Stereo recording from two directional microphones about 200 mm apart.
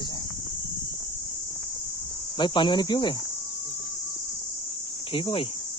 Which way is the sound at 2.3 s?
25° left (ahead or behind).